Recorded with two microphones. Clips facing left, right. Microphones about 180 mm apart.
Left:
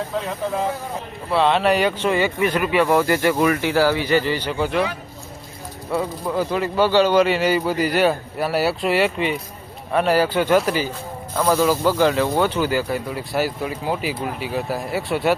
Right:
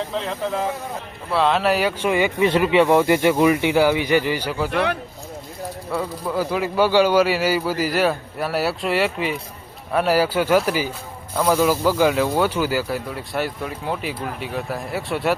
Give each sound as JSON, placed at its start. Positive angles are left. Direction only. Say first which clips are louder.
{"t": 1.3, "sound": "speech", "louder": "left 1 dB", "side_deg": 0}
{"t": 4.7, "sound": "speech", "louder": "right 2 dB", "side_deg": -60}
{"t": 5.9, "sound": "speech", "louder": "left 2 dB", "side_deg": 0}